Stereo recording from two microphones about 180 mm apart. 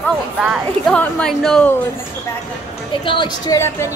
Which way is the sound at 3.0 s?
25° left (ahead or behind).